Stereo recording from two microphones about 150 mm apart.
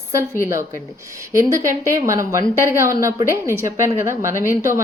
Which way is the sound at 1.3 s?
20° right (ahead or behind).